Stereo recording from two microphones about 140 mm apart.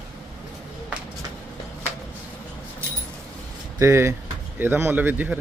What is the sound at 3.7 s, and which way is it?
Speech, 20° right (ahead or behind).